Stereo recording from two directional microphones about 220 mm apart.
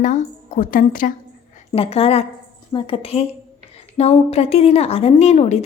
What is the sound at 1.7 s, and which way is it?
A woman's voice, 25° left (ahead or behind).